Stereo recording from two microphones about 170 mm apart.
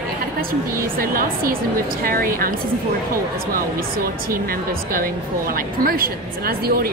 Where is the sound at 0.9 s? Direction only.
60° right (ahead or behind).